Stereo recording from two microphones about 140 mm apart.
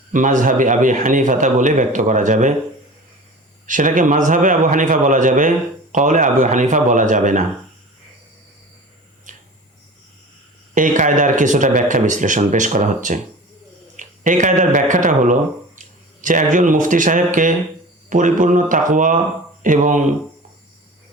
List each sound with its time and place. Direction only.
0.1 s a man's voice: 70° right (ahead or behind)
3.7 s a man's voice: 70° right (ahead or behind)
9.3 s tick-tock: 65° right (ahead or behind)
10.8 s a man's voice: 65° right (ahead or behind)